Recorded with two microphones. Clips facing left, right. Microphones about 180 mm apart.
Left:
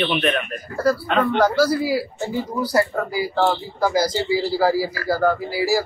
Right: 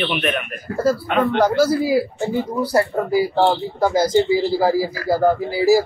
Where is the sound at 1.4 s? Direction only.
20° right (ahead or behind).